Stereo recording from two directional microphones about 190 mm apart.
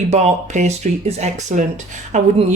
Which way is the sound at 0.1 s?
35° right (ahead or behind).